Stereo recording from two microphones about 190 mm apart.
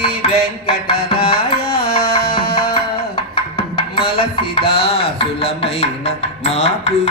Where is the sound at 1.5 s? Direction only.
55° left (ahead or behind).